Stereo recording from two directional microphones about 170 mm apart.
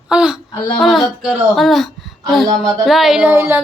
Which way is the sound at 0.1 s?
5° right (ahead or behind).